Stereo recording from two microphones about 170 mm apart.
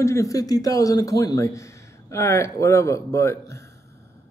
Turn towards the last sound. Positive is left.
turn(degrees=15)  # may be behind; listen again after turning